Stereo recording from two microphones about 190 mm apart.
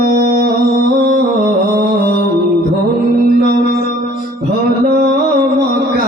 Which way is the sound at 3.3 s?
45° left (ahead or behind).